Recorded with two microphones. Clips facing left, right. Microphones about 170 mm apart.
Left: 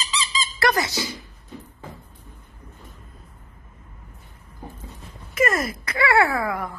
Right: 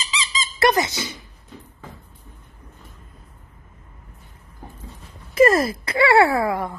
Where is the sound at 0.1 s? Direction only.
20° right (ahead or behind).